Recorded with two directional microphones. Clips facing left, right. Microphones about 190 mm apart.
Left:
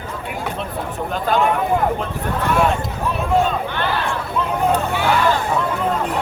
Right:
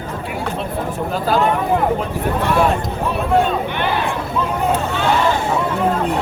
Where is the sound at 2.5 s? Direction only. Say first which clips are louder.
Right 1 dB; centre (ahead or behind).